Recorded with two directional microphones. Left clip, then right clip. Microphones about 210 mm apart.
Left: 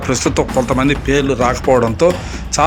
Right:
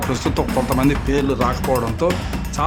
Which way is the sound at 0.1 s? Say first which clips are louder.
Left 8 dB; 10° left (ahead or behind).